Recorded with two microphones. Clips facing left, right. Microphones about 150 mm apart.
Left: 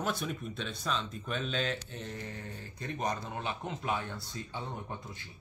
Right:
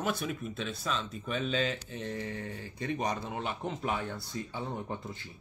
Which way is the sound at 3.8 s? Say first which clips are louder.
Even; 20° right (ahead or behind).